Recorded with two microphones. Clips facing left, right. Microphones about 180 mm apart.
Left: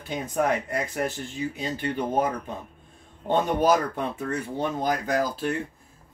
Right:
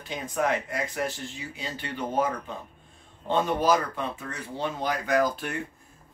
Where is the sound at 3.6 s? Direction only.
55° left (ahead or behind).